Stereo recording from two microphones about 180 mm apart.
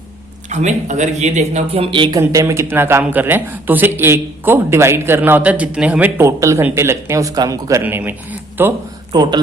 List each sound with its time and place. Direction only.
0.5 s speech: 40° right (ahead or behind); by 8.7 s 10° right (ahead or behind)
9.1 s speech: 25° right (ahead or behind)